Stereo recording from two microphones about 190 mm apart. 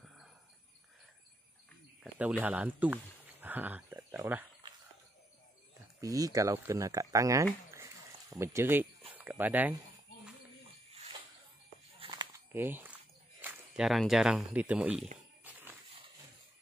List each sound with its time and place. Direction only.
2.1 s speech: 10° right (ahead or behind)
5.9 s speech: 20° right (ahead or behind)
7.7 s a sound: 15° right (ahead or behind)
9.1 s speech: 10° right (ahead or behind)
10.9 s bathtub: 35° right (ahead or behind)
12.0 s a sound: 25° right (ahead or behind)
12.5 s speech: 10° right (ahead or behind)